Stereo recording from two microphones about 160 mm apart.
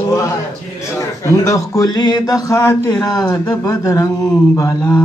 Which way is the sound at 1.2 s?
20° left (ahead or behind).